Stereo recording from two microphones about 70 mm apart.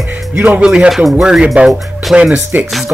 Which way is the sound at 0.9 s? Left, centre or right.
Centre.